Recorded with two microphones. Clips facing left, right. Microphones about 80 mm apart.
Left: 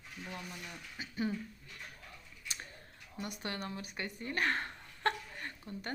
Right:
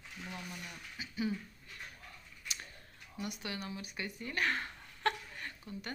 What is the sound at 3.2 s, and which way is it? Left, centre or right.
Speech, left.